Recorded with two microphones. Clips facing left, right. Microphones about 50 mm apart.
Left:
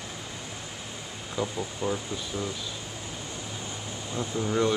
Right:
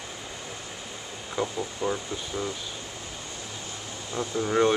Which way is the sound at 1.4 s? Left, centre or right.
Centre.